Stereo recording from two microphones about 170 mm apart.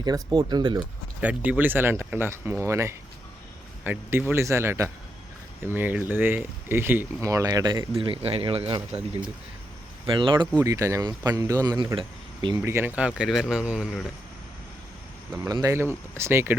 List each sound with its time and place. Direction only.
0.0 s speech: 25° right (ahead or behind)
1.2 s speech: 10° right (ahead or behind); by 8.8 s 30° right (ahead or behind)
8.9 s speech: 5° right (ahead or behind)
10.1 s speech: 30° right (ahead or behind)
12.5 s speech: 15° right (ahead or behind)
15.3 s speech: 20° right (ahead or behind)